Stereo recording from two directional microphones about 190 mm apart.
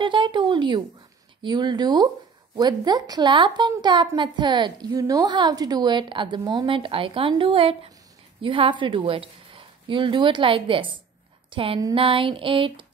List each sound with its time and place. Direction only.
0.0 s a woman's voice: 25° right (ahead or behind)